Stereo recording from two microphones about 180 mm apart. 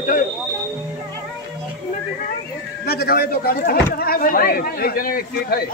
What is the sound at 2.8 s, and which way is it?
Speech, 60° left (ahead or behind).